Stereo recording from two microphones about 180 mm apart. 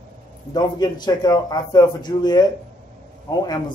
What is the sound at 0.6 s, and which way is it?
Speech, 25° left (ahead or behind).